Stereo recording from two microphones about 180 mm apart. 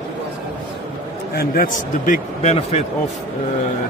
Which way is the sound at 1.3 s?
50° left (ahead or behind).